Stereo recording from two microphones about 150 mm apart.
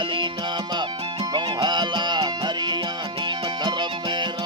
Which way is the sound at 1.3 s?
30° right (ahead or behind).